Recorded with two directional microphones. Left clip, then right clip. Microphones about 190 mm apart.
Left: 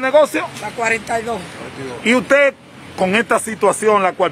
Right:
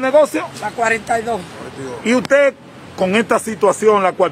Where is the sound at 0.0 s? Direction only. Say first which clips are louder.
Even; centre (ahead or behind).